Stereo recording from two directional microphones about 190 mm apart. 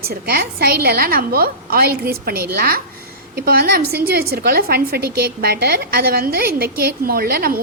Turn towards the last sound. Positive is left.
turn(degrees=-50)  # may be behind; listen again after turning